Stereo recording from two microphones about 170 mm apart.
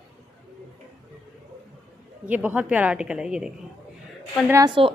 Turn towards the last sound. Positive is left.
turn(degrees=-20)  # may be behind; listen again after turning